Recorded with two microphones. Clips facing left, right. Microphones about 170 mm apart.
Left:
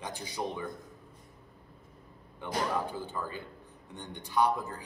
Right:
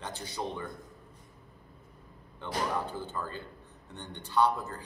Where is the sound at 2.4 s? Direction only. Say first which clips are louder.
Left 1 dB; 10° left (ahead or behind).